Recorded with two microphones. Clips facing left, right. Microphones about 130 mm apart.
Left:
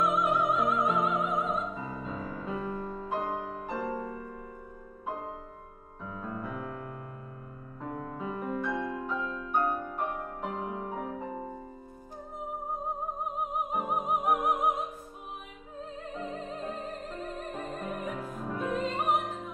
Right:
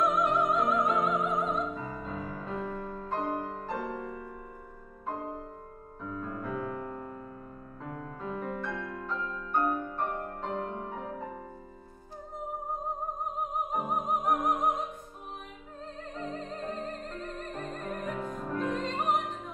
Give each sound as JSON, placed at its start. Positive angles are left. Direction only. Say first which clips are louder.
{"t": 0.0, "sound": "music", "louder": "even", "side_deg": 5}
{"t": 5.0, "sound": "music", "louder": "right 1 dB", "side_deg": 5}
{"t": 6.0, "sound": "piano", "louder": "right 1 dB", "side_deg": 5}
{"t": 7.8, "sound": "music", "louder": "left 3 dB", "side_deg": 10}
{"t": 13.2, "sound": "music", "louder": "left 1 dB", "side_deg": 5}
{"t": 16.0, "sound": "music", "louder": "even", "side_deg": 5}